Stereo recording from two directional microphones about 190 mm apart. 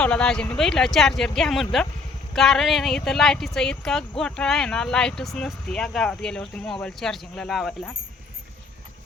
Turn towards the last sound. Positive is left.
turn(degrees=0)  # may be behind; listen again after turning